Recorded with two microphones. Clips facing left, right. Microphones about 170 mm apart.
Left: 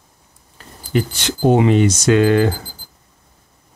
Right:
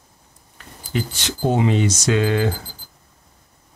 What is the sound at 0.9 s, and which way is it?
Speech, 65° left (ahead or behind).